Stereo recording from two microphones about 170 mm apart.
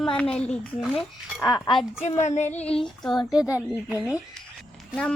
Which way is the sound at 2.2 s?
45° left (ahead or behind).